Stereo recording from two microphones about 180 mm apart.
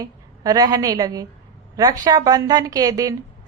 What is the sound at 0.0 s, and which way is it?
A woman's voice, 20° right (ahead or behind).